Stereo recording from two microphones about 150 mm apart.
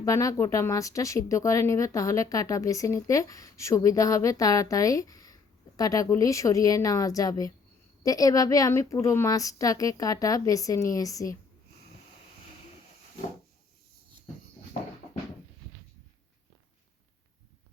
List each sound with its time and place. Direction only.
0.0 s speech: 20° left (ahead or behind)